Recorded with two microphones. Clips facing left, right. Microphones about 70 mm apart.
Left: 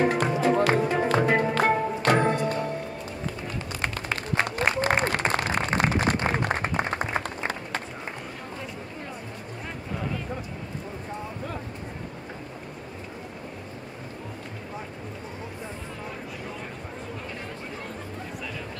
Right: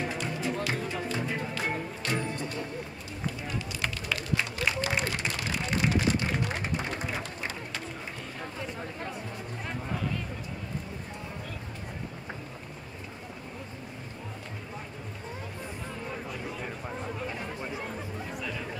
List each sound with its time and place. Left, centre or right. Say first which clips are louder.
0.0 s music: left 10 dB; left
0.6 s music: left 10 dB; left
0.8 s music: left 10 dB; left
3.8 s applause: left 5 dB; left